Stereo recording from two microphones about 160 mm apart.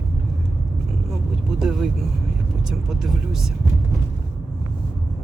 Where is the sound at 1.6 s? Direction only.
5° right (ahead or behind).